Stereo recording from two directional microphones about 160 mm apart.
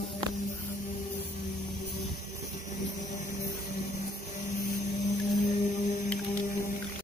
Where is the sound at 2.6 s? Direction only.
50° left (ahead or behind).